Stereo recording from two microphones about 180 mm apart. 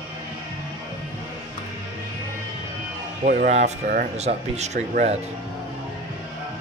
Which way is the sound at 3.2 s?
45° right (ahead or behind).